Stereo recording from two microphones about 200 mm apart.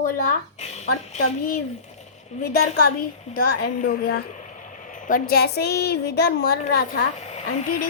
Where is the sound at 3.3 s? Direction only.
50° left (ahead or behind).